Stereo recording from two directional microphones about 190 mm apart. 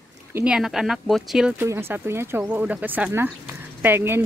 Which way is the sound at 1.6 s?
15° right (ahead or behind).